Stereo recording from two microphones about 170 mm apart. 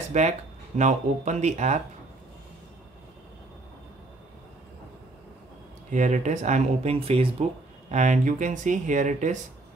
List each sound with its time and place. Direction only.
0.1 s speech: 45° right (ahead or behind)
5.9 s speech: 45° right (ahead or behind)
7.9 s speech: 45° right (ahead or behind)